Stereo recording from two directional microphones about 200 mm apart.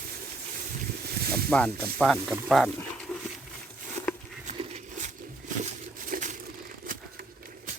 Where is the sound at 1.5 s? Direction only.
5° left (ahead or behind).